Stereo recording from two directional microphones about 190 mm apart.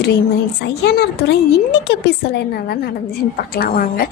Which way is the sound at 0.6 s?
60° left (ahead or behind).